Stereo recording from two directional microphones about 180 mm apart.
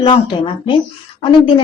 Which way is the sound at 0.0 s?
30° left (ahead or behind).